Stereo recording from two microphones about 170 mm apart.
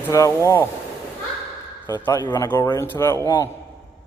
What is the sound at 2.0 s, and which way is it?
A man's voice, 20° left (ahead or behind).